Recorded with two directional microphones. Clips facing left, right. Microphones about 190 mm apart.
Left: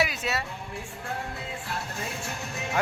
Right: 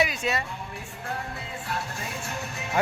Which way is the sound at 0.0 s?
5° left (ahead or behind).